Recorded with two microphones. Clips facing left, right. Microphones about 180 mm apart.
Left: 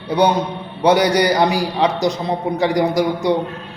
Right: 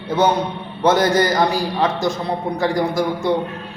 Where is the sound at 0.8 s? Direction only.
15° left (ahead or behind).